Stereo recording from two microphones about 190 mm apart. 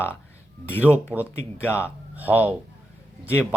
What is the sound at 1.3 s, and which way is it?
Speech, 10° left (ahead or behind).